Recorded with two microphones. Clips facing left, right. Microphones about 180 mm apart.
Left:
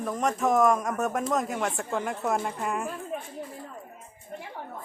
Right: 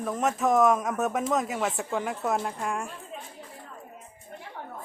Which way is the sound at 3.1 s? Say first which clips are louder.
Left 7 dB; 65° left (ahead or behind).